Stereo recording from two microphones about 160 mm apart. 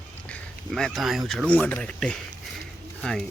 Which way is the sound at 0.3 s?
5° left (ahead or behind).